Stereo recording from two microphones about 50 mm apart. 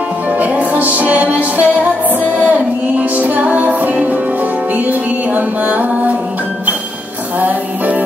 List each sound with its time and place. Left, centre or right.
0.4 s music: right
7.3 s music: right